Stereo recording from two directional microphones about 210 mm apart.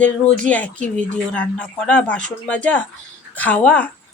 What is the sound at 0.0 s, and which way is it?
Speech, 5° left (ahead or behind).